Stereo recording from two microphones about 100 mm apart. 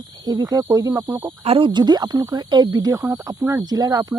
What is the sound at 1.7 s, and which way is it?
Speech, 45° right (ahead or behind).